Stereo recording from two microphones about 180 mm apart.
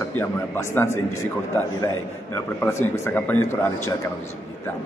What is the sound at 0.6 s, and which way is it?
Speech, 15° left (ahead or behind).